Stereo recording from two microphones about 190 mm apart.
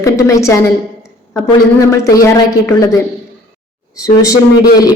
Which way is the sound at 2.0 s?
15° left (ahead or behind).